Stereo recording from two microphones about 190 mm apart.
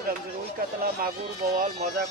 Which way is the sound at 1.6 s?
45° right (ahead or behind).